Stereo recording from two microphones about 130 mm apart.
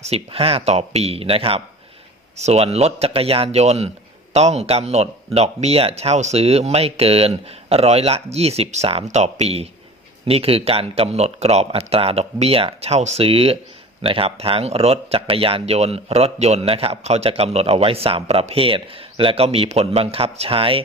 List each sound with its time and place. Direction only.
0.0 s speech: 50° right (ahead or behind)